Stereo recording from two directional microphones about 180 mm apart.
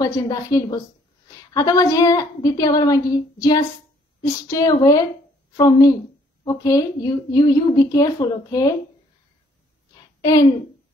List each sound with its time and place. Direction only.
0.0 s a woman's voice: 20° left (ahead or behind)
10.2 s a woman's voice: 20° left (ahead or behind)